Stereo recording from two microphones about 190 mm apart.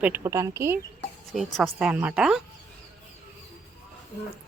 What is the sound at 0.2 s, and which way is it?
Speech, 15° right (ahead or behind).